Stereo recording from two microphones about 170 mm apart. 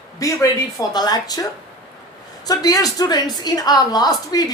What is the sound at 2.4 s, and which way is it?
Speech, 20° left (ahead or behind).